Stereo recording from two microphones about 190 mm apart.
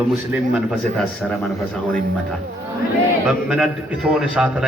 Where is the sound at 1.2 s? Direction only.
Centre (ahead or behind).